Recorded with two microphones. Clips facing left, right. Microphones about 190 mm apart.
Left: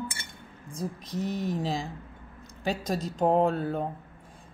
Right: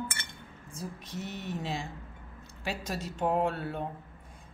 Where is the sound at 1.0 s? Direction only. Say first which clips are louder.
Left 9 dB; 35° left (ahead or behind).